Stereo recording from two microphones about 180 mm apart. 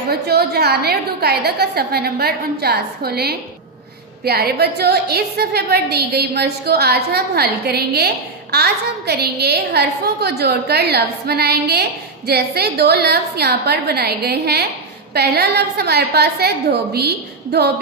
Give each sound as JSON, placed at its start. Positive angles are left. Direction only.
{"t": 0.1, "sound": "a woman's voice", "side_deg": -60}